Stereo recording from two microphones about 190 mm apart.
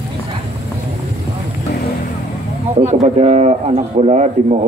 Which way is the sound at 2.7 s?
35° right (ahead or behind).